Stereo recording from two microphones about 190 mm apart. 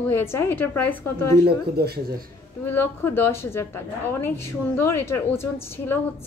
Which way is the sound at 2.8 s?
10° left (ahead or behind).